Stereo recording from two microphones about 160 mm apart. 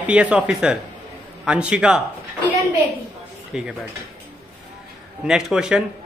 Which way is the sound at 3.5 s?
5° right (ahead or behind).